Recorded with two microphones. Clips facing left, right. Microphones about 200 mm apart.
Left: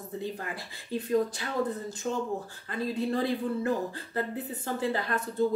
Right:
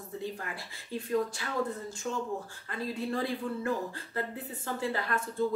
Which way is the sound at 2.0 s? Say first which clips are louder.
Left 3 dB; 35° left (ahead or behind).